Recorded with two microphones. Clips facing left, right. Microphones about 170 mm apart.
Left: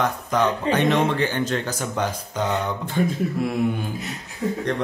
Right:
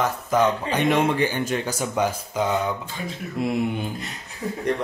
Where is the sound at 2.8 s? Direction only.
60° left (ahead or behind).